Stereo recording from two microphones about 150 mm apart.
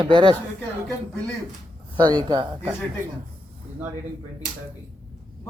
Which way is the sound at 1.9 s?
25° right (ahead or behind).